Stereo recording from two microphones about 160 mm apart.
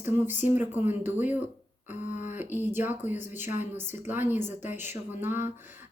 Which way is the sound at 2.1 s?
50° left (ahead or behind).